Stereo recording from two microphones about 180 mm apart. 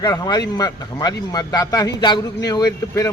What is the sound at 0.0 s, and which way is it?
Speech, 20° left (ahead or behind).